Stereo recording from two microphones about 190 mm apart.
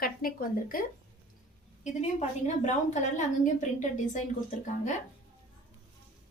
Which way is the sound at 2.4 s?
40° left (ahead or behind).